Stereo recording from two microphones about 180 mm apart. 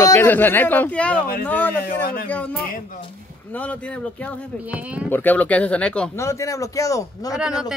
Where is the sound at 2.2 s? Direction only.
10° left (ahead or behind).